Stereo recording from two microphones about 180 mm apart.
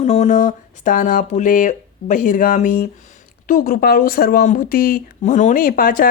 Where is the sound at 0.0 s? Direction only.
40° left (ahead or behind).